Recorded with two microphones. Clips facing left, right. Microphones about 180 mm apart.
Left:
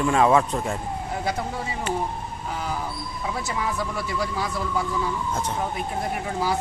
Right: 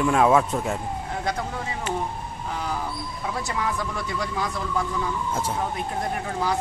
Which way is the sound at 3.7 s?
5° left (ahead or behind).